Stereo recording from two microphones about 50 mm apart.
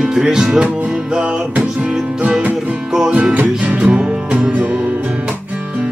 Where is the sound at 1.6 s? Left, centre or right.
Right.